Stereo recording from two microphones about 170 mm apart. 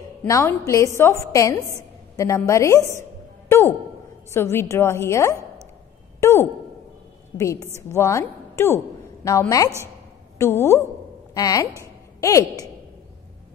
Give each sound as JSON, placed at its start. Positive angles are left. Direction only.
{"t": 0.3, "sound": "a woman's voice", "side_deg": 15}
{"t": 7.9, "sound": "a woman's voice", "side_deg": 15}
{"t": 11.8, "sound": "a sound", "side_deg": 20}